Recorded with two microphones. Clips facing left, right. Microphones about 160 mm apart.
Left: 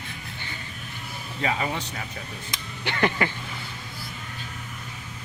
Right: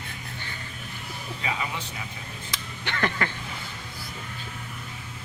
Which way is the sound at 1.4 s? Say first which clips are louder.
Left 5 dB; 45° left (ahead or behind).